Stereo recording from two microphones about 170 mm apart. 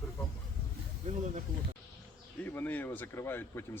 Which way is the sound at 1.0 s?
45° right (ahead or behind).